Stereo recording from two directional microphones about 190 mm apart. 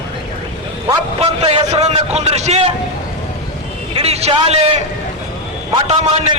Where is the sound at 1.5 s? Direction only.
35° right (ahead or behind).